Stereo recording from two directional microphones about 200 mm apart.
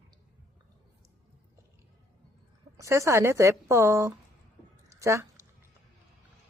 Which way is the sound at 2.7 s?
15° right (ahead or behind).